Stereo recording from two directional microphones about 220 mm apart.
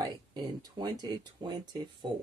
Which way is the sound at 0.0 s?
20° right (ahead or behind).